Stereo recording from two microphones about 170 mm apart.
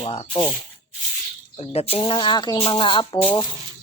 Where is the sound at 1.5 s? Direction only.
35° left (ahead or behind).